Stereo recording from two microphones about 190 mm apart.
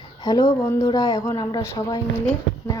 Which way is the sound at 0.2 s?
20° left (ahead or behind).